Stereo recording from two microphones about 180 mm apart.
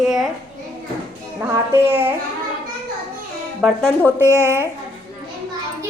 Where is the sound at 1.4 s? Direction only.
15° right (ahead or behind).